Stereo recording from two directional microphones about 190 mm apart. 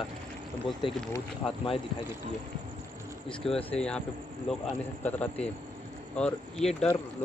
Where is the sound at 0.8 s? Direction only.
25° left (ahead or behind).